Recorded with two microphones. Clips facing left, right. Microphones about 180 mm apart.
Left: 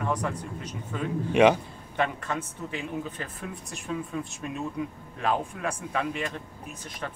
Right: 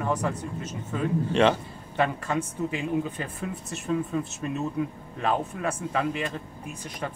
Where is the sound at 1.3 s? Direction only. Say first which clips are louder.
Left 3 dB; 10° left (ahead or behind).